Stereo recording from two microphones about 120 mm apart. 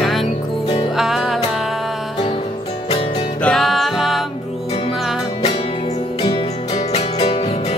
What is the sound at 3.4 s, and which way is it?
Music, centre (ahead or behind).